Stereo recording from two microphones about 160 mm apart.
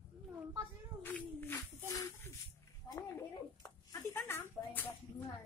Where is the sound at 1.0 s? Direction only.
10° left (ahead or behind).